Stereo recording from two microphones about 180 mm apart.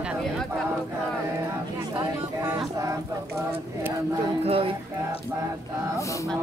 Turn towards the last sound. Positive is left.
turn(degrees=-30)  # may be behind; listen again after turning